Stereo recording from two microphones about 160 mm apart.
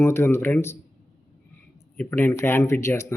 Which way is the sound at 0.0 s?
15° left (ahead or behind).